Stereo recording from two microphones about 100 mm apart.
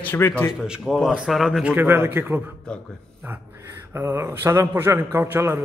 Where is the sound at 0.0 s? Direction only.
20° left (ahead or behind).